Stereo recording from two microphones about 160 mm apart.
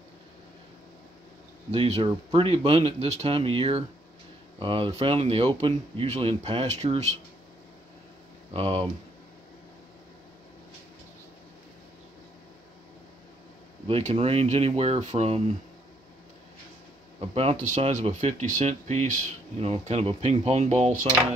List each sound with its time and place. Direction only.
1.7 s speech: 35° right (ahead or behind)
8.5 s speech: 40° right (ahead or behind)
13.8 s speech: 35° right (ahead or behind)
17.2 s speech: 35° right (ahead or behind)